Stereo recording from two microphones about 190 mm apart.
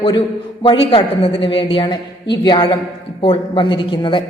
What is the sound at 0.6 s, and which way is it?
A woman's voice, 30° left (ahead or behind).